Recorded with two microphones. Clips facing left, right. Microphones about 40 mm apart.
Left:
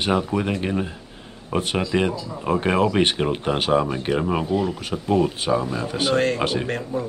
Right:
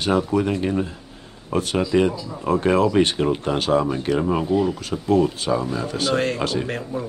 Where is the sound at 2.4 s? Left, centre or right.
Left.